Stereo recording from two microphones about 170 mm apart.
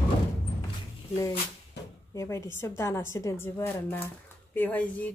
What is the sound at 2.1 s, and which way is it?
A woman's voice, 15° left (ahead or behind).